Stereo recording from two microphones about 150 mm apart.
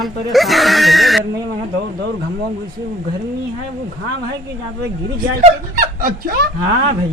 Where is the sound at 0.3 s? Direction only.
Centre (ahead or behind).